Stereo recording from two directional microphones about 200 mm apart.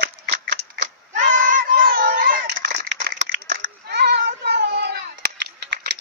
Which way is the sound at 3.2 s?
40° right (ahead or behind).